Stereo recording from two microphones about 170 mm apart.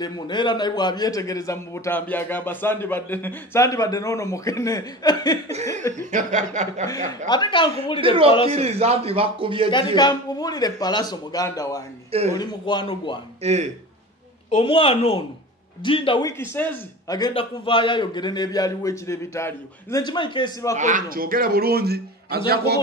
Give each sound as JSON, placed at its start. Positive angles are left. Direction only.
{"t": 0.0, "sound": "a man's voice", "side_deg": 25}
{"t": 6.1, "sound": "chuckle", "side_deg": -45}
{"t": 7.2, "sound": "a man's voice", "side_deg": 25}
{"t": 8.5, "sound": "a man's voice", "side_deg": -35}
{"t": 9.7, "sound": "a man's voice", "side_deg": 25}
{"t": 13.4, "sound": "a man's voice", "side_deg": -40}
{"t": 14.5, "sound": "a woman's voice", "side_deg": 30}
{"t": 16.3, "sound": "speech", "side_deg": 10}
{"t": 17.1, "sound": "a man's voice", "side_deg": 30}
{"t": 20.7, "sound": "a man's voice", "side_deg": -50}